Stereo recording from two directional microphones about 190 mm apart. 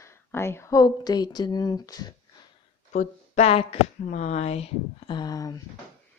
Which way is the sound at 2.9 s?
40° left (ahead or behind).